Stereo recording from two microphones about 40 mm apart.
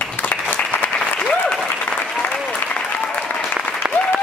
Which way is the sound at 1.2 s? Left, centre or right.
Left.